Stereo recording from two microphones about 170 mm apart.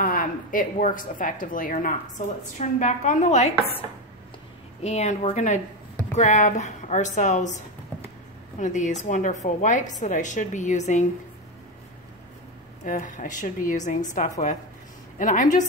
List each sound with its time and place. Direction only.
0.0 s a woman's voice: 55° left (ahead or behind)
4.8 s a woman's voice: 40° left (ahead or behind)
12.8 s a woman's voice: 50° left (ahead or behind)